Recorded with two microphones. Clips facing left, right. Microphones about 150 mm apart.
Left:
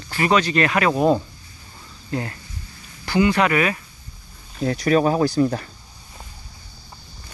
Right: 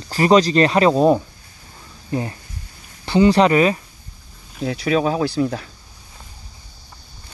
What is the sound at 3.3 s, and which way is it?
Speech, 30° right (ahead or behind).